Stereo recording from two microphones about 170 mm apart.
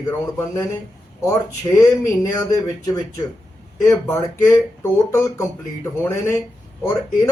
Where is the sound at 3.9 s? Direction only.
15° left (ahead or behind).